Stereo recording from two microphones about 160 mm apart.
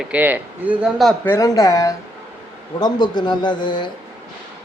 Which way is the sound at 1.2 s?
20° left (ahead or behind).